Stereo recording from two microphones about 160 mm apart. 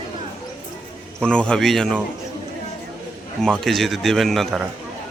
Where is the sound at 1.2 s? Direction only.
5° left (ahead or behind).